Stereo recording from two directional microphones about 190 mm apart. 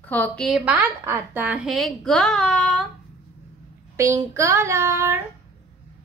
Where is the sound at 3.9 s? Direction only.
15° right (ahead or behind).